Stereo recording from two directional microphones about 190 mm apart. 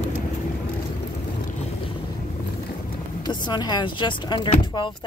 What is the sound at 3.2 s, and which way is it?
Speech, 20° left (ahead or behind).